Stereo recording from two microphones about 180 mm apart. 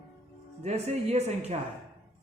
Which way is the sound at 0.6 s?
40° right (ahead or behind).